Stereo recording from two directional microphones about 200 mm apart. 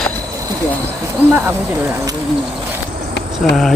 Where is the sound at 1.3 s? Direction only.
10° right (ahead or behind).